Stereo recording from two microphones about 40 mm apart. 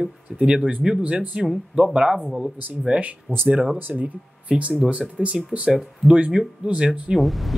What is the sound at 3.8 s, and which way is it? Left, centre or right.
Speech, right.